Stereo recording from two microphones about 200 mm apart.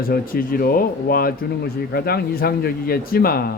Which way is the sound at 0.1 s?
45° left (ahead or behind).